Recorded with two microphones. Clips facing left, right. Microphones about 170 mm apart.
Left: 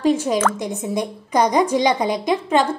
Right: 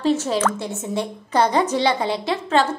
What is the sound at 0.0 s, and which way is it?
A woman's voice, 15° left (ahead or behind).